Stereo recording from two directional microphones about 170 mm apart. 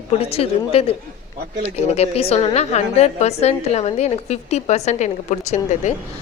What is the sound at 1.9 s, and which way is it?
A woman's voice, 35° left (ahead or behind).